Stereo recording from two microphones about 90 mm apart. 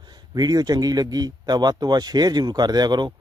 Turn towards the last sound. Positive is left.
turn(degrees=-50)  # may be behind; listen again after turning